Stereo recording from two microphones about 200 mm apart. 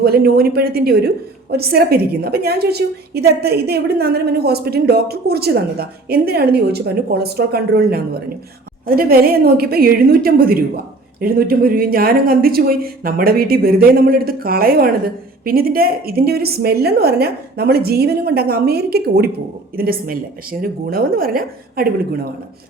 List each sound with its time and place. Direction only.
0.0 s a woman's voice: 50° right (ahead or behind)